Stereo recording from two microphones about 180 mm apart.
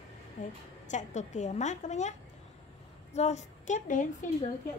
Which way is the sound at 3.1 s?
40° left (ahead or behind).